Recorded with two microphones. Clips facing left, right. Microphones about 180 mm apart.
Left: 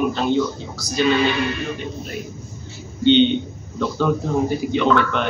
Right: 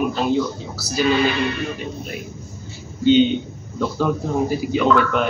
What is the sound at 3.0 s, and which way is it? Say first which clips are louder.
A man's voice: even; 5° right (ahead or behind).